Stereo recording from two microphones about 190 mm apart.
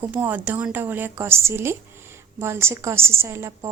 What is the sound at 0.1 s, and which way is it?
A woman's voice, 10° right (ahead or behind).